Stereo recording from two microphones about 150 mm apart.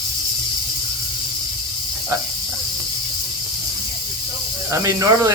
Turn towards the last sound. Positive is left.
turn(degrees=-20)  # may be behind; listen again after turning